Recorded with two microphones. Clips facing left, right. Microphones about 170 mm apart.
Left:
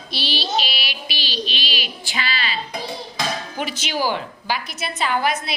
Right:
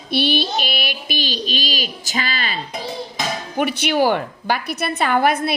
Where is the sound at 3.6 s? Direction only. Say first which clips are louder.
Right 9 dB; 60° right (ahead or behind).